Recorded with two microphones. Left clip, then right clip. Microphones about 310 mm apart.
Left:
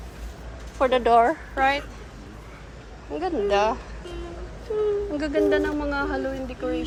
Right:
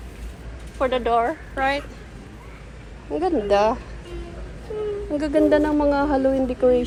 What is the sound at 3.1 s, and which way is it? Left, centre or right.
Speech, centre.